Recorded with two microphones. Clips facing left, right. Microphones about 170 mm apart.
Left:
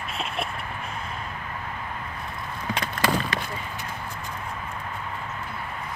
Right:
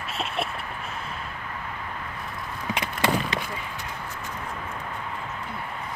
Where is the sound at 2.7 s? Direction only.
20° right (ahead or behind).